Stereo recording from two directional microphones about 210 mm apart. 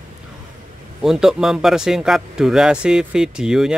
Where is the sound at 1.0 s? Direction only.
Centre (ahead or behind).